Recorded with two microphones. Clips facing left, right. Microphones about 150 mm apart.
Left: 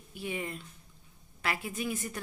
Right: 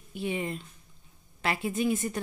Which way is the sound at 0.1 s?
25° right (ahead or behind).